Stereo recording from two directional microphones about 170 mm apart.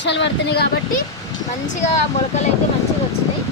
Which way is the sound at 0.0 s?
90° left.